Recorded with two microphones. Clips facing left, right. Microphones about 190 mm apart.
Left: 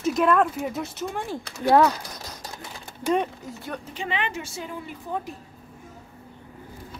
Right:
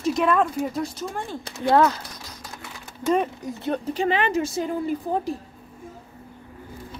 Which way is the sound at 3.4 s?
20° right (ahead or behind).